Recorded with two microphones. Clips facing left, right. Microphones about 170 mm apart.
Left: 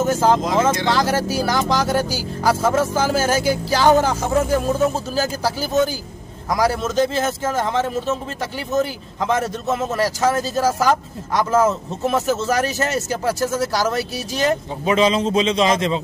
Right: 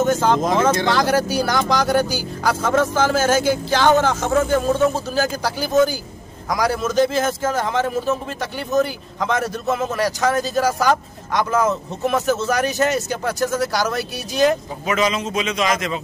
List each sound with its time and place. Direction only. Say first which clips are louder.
0.0 s speech: even; 5° left (ahead or behind)
14.9 s a man's voice: left 4 dB; 30° left (ahead or behind)